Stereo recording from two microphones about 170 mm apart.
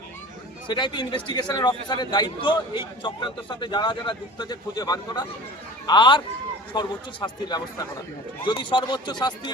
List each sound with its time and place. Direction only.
0.7 s a man's voice: 25° left (ahead or behind)